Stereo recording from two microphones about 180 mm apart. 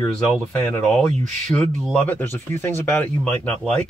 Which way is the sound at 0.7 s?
5° left (ahead or behind).